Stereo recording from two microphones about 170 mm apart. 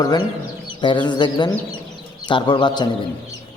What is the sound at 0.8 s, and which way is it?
A man's voice, 25° left (ahead or behind).